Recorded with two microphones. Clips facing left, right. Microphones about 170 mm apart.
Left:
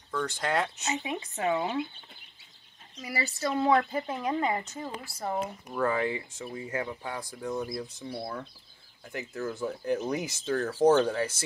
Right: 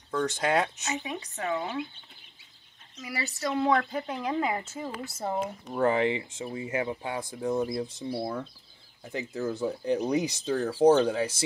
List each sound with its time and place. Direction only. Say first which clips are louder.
0.1 s speech: right 3 dB; 20° right (ahead or behind)
0.8 s speech: left 1 dB; 15° left (ahead or behind)
3.1 s speech: left 1 dB; centre (ahead or behind)
5.0 s speech: right 1 dB; 25° right (ahead or behind)
9.0 s speech: right 3 dB; 20° right (ahead or behind)